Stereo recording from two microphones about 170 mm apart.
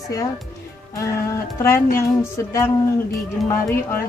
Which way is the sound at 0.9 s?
15° left (ahead or behind).